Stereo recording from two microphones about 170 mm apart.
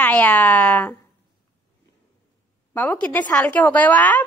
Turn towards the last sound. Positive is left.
turn(degrees=10)  # may be behind; listen again after turning